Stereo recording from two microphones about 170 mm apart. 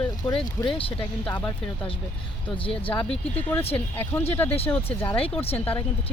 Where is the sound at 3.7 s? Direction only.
10° left (ahead or behind).